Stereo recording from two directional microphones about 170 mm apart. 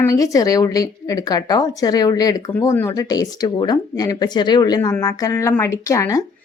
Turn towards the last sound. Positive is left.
turn(degrees=20)  # may be behind; listen again after turning